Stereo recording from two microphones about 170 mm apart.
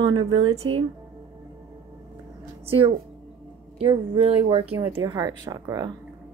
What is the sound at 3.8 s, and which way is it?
Speech, 30° right (ahead or behind).